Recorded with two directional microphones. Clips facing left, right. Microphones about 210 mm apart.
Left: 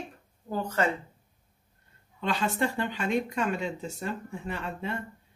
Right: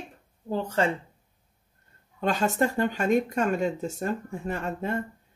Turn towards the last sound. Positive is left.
turn(degrees=-45)  # may be behind; listen again after turning